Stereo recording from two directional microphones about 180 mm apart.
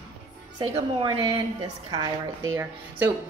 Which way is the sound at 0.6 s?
25° right (ahead or behind).